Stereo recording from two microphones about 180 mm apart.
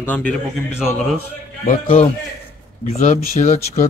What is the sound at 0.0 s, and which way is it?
Speech, 10° left (ahead or behind).